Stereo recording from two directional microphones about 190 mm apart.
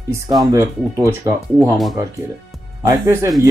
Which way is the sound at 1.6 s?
Centre (ahead or behind).